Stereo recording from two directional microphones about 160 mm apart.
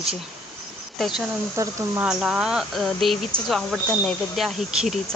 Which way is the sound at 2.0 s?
5° right (ahead or behind).